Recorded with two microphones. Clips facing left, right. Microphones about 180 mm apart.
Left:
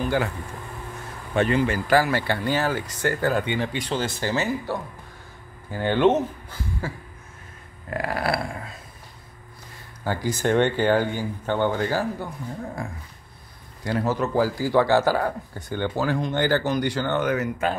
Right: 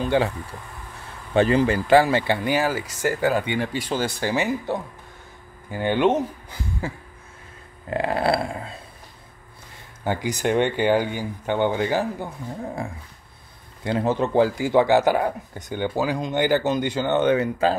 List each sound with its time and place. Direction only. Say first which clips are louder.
0.0 s speech: right 3 dB; 25° right (ahead or behind)
1.3 s speech: right 3 dB; 35° right (ahead or behind)
1.9 s speech: right 5 dB; 25° right (ahead or behind)
7.9 s speech: right 4 dB; 25° right (ahead or behind)
10.0 s speech: even; 20° right (ahead or behind)
13.8 s speech: right 2 dB; 25° right (ahead or behind)